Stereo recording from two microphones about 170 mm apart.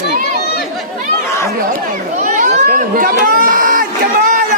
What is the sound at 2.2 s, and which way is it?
Chatter, 50° right (ahead or behind).